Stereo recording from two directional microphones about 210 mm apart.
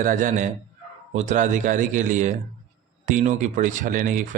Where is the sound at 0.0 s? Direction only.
40° right (ahead or behind).